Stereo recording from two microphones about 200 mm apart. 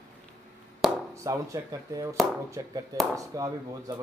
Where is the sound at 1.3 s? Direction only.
15° right (ahead or behind).